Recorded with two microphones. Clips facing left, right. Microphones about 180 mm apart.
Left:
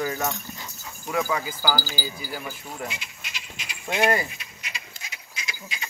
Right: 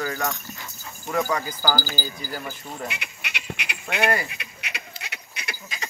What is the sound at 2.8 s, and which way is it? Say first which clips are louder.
Speech: right 1 dB; 65° right (ahead or behind).